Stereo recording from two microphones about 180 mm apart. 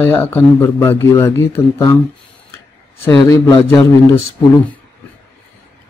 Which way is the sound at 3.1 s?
20° left (ahead or behind).